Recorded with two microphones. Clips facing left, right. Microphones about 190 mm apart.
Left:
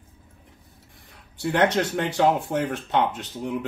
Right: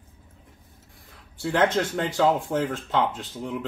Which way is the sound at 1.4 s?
20° left (ahead or behind).